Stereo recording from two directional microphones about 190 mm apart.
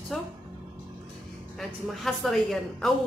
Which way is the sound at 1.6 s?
Centre (ahead or behind).